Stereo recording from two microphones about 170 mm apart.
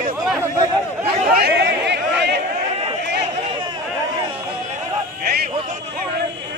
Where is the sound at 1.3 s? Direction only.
70° right (ahead or behind).